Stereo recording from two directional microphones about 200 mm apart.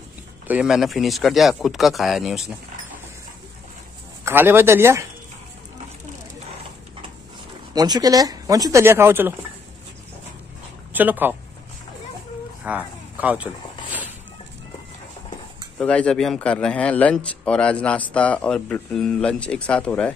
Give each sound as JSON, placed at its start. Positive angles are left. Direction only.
{"t": 0.5, "sound": "a man's voice", "side_deg": -5}
{"t": 4.2, "sound": "speech", "side_deg": -10}
{"t": 7.7, "sound": "speech", "side_deg": -20}
{"t": 10.9, "sound": "speech", "side_deg": -10}
{"t": 12.6, "sound": "a sound", "side_deg": -5}
{"t": 15.8, "sound": "a man's voice", "side_deg": 5}